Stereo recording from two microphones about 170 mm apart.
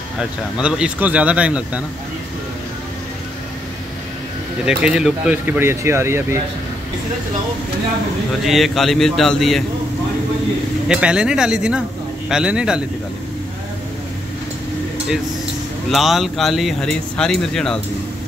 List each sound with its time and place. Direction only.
0.2 s speech: 5° right (ahead or behind)
4.6 s speech: 5° right (ahead or behind)
8.5 s speech: centre (ahead or behind)
10.9 s speech: 5° right (ahead or behind)
15.9 s speech: centre (ahead or behind)